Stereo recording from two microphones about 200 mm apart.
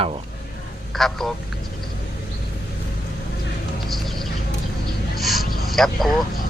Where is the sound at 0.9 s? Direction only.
Centre (ahead or behind).